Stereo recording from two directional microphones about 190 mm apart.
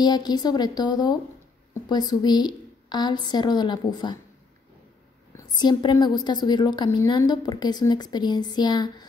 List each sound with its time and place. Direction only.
0.0 s a woman's voice: 20° left (ahead or behind)
5.3 s a woman's voice: 20° left (ahead or behind)